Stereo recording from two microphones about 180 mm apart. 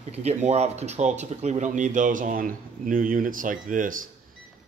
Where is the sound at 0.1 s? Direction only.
35° right (ahead or behind).